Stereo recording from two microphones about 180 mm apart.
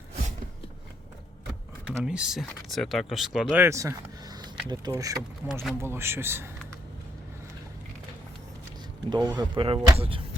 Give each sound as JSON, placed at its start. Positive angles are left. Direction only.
{"t": 1.9, "sound": "a man's voice", "side_deg": -5}
{"t": 9.0, "sound": "speech", "side_deg": -25}